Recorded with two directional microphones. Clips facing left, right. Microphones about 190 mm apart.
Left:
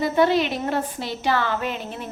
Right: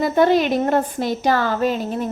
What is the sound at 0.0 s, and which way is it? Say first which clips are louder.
A woman's voice: right 3 dB; 45° right (ahead or behind).